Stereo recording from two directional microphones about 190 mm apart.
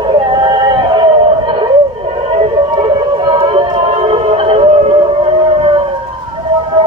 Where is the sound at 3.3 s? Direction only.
25° right (ahead or behind).